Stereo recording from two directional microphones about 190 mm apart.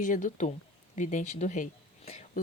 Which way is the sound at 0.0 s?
45° left (ahead or behind).